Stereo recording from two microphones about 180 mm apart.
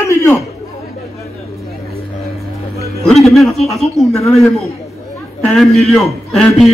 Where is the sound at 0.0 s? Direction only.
15° left (ahead or behind).